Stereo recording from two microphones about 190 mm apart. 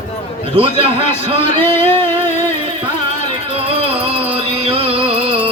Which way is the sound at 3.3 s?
30° right (ahead or behind).